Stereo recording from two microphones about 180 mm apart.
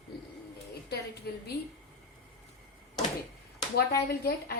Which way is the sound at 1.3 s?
65° left (ahead or behind).